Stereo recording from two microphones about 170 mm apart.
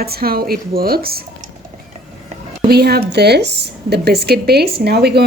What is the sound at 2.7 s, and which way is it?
Speech, 70° right (ahead or behind).